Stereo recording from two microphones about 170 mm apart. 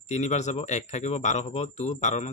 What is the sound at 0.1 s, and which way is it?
Speech, 40° left (ahead or behind).